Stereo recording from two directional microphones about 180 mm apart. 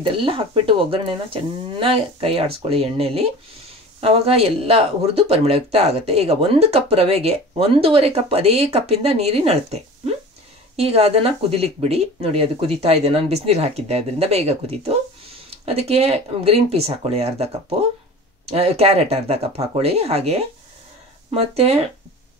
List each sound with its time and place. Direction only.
0.0 s speech: 30° right (ahead or behind)